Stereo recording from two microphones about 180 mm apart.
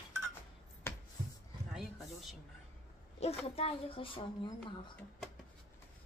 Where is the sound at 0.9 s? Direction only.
15° left (ahead or behind).